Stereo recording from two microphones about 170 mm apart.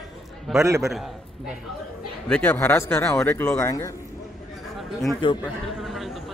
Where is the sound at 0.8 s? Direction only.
Centre (ahead or behind); by 3.9 s 20° left (ahead or behind).